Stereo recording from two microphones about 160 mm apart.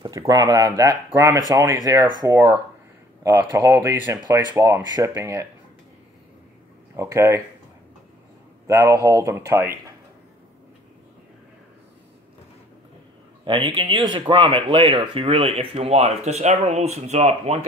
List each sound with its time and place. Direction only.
0.3 s speech: 20° right (ahead or behind)
7.0 s speech: 15° right (ahead or behind)
8.6 s speech: 20° right (ahead or behind)
13.4 s speech: 30° right (ahead or behind)